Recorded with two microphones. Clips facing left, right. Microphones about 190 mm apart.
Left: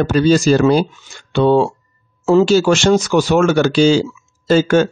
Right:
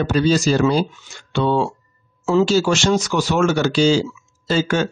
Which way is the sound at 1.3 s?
50° left (ahead or behind).